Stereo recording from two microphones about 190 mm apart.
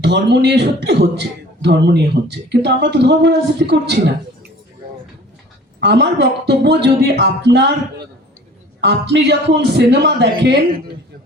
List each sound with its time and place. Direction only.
0.0 s speech: 65° right (ahead or behind)
5.8 s speech: 60° right (ahead or behind)